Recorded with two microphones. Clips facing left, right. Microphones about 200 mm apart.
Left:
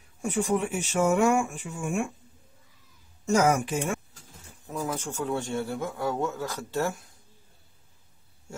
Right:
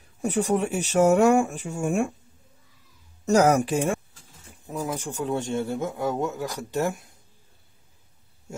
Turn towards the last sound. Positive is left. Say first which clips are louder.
# right 3 dB
turn(degrees=-20)  # may be behind; listen again after turning